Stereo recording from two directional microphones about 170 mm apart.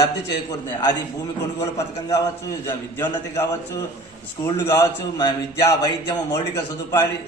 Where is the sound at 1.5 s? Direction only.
20° left (ahead or behind).